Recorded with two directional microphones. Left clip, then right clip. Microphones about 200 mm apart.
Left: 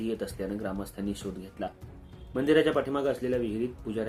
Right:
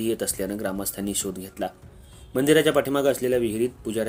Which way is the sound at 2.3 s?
45° right (ahead or behind).